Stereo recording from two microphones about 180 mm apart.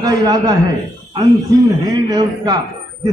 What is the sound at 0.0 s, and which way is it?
Speech, 20° right (ahead or behind).